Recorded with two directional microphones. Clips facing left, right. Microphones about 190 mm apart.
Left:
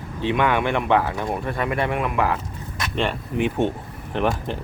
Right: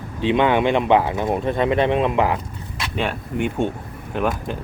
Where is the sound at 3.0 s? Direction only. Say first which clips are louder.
Even; centre (ahead or behind).